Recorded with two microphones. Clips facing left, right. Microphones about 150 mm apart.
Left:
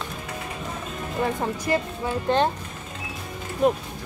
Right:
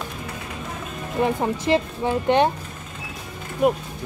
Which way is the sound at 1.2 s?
20° right (ahead or behind).